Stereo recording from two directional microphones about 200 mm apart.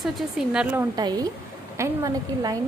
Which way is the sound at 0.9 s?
20° right (ahead or behind).